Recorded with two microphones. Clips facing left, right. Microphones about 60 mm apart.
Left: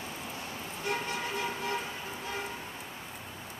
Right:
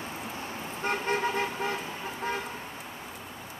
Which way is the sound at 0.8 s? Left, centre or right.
Right.